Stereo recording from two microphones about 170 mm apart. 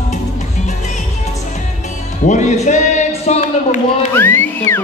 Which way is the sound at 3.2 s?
40° left (ahead or behind).